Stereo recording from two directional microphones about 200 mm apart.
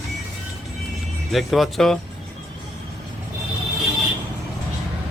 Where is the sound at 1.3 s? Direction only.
Centre (ahead or behind).